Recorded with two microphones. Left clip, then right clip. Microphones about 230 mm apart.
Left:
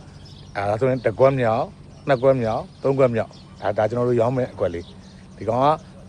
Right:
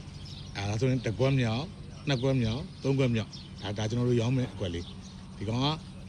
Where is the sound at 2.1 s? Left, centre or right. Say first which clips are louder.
Left 13 dB; centre.